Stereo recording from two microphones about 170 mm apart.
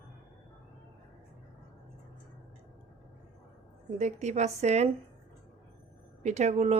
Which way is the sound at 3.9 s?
45° right (ahead or behind).